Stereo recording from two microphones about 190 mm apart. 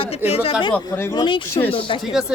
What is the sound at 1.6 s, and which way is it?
Speech, 25° left (ahead or behind).